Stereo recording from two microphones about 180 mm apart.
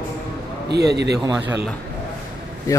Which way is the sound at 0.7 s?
65° right (ahead or behind).